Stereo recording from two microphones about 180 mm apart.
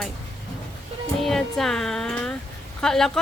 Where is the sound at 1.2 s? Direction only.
Centre (ahead or behind).